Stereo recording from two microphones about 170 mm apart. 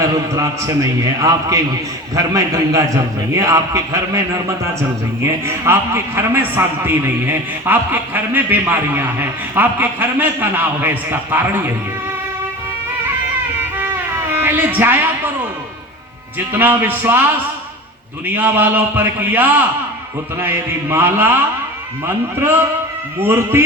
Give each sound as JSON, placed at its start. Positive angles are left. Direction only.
{"t": 0.0, "sound": "a man's voice", "side_deg": -20}
{"t": 14.3, "sound": "a woman's voice", "side_deg": -10}
{"t": 16.5, "sound": "a man's voice", "side_deg": -10}
{"t": 18.3, "sound": "a man's voice", "side_deg": -10}